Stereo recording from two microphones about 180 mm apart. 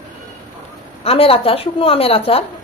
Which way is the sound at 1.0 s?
30° left (ahead or behind).